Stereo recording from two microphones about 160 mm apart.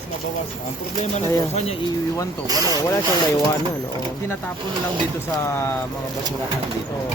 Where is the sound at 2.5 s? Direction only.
20° right (ahead or behind).